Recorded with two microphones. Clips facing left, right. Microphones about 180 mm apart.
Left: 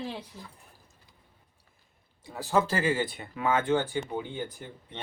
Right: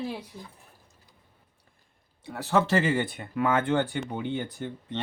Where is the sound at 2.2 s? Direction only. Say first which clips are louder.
Right 1 dB; 65° right (ahead or behind).